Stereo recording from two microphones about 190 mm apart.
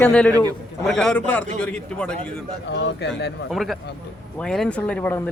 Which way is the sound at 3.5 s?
Centre (ahead or behind).